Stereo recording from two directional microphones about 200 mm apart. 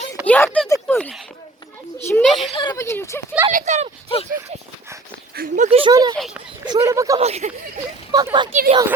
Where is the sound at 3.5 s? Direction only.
40° right (ahead or behind); by 6.1 s 20° right (ahead or behind).